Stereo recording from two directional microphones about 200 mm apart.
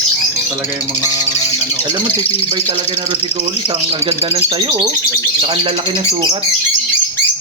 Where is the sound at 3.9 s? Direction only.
30° right (ahead or behind).